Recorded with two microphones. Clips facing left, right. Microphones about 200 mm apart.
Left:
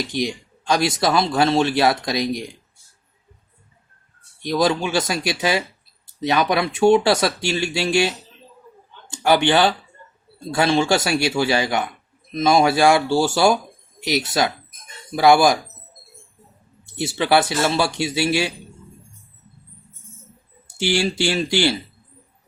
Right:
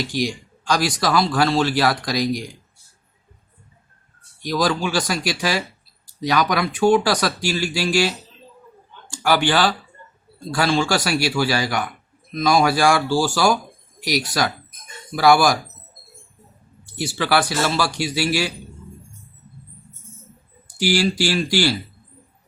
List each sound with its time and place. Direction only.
0.1 s a man's voice: 20° left (ahead or behind)
4.4 s a man's voice: 25° left (ahead or behind)
16.8 s a man's voice: 20° left (ahead or behind)
20.7 s a man's voice: 25° left (ahead or behind)